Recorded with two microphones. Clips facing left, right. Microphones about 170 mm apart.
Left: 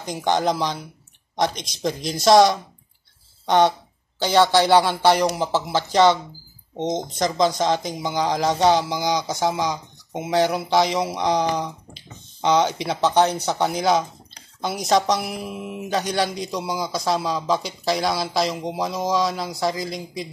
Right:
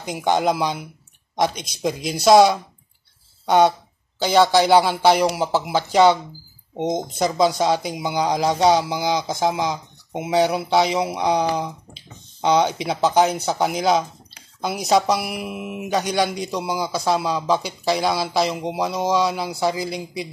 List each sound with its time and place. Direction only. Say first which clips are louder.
0.0 s speech: right 1 dB; 5° right (ahead or behind)
10.1 s speech: right 1 dB; 15° right (ahead or behind)
10.5 s speech: right 1 dB; 5° right (ahead or behind)